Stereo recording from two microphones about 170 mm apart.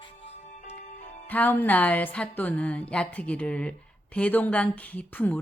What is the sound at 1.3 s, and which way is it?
A woman's voice, 10° left (ahead or behind).